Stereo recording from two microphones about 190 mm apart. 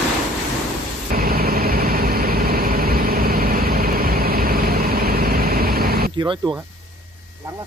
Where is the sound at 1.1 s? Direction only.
50° right (ahead or behind).